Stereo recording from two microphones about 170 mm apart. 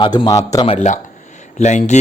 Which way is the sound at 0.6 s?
40° left (ahead or behind).